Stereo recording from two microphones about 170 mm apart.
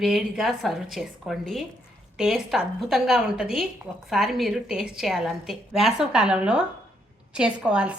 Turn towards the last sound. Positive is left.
turn(degrees=-5)  # may be behind; listen again after turning